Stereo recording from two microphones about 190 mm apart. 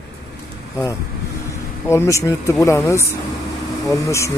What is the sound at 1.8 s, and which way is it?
Speech, 15° left (ahead or behind).